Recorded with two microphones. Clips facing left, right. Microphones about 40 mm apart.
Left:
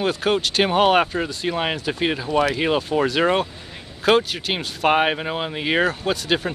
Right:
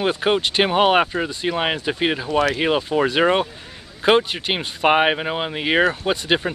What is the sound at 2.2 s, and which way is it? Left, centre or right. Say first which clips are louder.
Speech: left 1 dB; centre.